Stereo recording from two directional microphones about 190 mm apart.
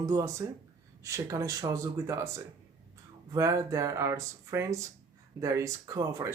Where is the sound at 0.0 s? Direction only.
15° right (ahead or behind).